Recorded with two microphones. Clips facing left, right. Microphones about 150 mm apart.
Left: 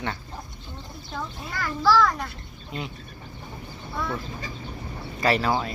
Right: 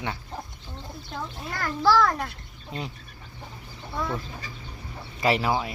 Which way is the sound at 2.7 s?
30° right (ahead or behind).